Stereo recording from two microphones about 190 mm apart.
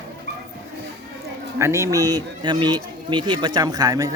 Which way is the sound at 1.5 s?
15° right (ahead or behind).